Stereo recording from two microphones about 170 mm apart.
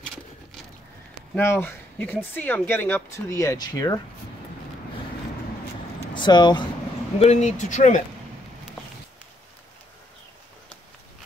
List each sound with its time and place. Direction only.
1.3 s speech: 10° left (ahead or behind)
6.1 s speech: 25° left (ahead or behind)
7.2 s speech: 40° left (ahead or behind)